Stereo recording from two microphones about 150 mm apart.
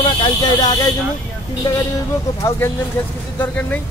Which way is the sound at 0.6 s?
25° left (ahead or behind).